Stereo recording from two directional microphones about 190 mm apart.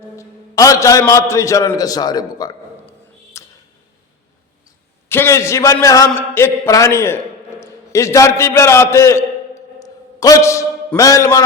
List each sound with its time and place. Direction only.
0.2 s a man's voice: 15° left (ahead or behind)
3.3 s a sound: 15° left (ahead or behind)
5.0 s a man's voice: 10° left (ahead or behind)